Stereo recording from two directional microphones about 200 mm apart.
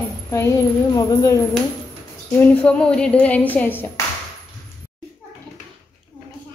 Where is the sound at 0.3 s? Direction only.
15° left (ahead or behind).